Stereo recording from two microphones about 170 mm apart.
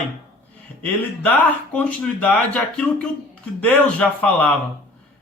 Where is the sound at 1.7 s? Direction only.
10° left (ahead or behind).